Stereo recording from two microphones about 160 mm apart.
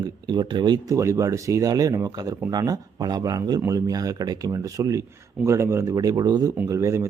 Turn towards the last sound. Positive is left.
turn(degrees=-20)  # may be behind; listen again after turning